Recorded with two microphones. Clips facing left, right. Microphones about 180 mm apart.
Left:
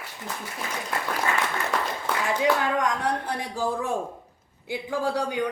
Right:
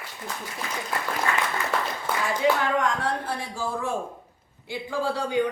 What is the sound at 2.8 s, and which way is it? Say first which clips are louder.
Speech: even; 15° left (ahead or behind).